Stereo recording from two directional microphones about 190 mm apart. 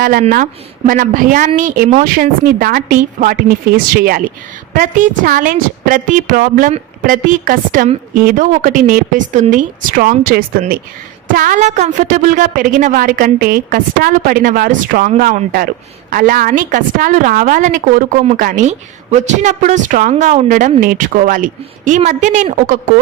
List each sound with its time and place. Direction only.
0.0 s a woman's voice: 45° right (ahead or behind)